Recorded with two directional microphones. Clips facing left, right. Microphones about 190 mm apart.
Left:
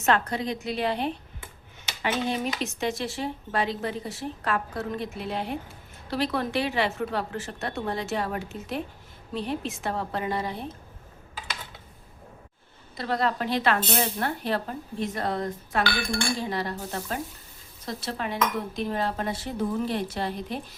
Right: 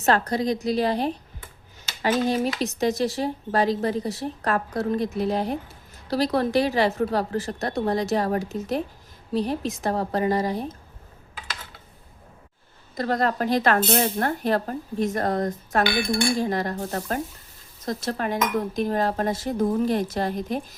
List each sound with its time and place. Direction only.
0.0 s speech: 35° right (ahead or behind)
13.0 s dishes: 45° right (ahead or behind)
15.8 s dishes: 15° right (ahead or behind)
16.4 s dishes: 45° right (ahead or behind)